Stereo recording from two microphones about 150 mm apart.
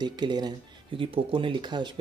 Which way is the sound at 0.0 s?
30° right (ahead or behind).